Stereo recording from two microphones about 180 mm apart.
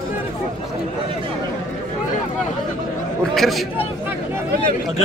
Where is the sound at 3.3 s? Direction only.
Centre (ahead or behind).